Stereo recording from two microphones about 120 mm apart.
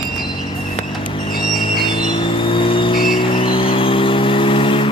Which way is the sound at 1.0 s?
45° left (ahead or behind).